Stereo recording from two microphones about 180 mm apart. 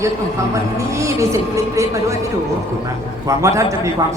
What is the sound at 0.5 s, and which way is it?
A woman's voice, 15° right (ahead or behind).